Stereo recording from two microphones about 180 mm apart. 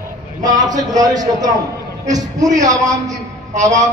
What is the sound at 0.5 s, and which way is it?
Speech, 45° right (ahead or behind).